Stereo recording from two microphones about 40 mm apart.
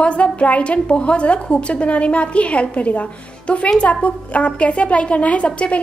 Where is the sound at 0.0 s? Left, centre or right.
Left.